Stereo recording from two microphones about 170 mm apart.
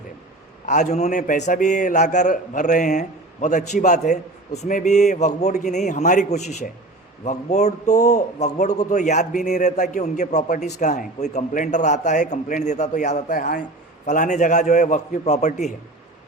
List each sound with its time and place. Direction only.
0.6 s a man's voice: 45° left (ahead or behind)